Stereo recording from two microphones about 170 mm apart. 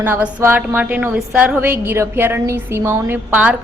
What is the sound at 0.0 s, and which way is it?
A woman's voice, 10° right (ahead or behind).